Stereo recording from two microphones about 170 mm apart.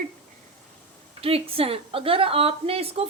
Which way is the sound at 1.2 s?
35° right (ahead or behind).